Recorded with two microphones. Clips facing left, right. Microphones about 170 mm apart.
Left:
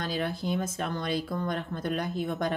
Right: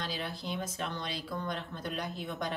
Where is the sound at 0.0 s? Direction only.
50° left (ahead or behind).